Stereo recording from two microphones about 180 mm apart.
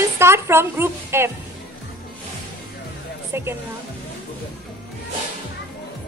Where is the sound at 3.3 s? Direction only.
15° right (ahead or behind).